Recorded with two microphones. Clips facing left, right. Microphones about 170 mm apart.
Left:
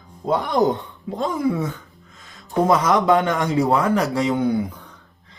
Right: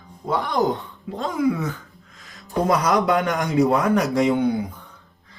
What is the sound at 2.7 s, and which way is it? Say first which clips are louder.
A man's voice: left 2 dB; 25° left (ahead or behind).